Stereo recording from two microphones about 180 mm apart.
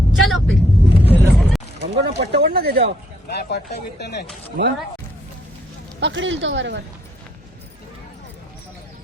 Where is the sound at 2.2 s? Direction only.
60° right (ahead or behind).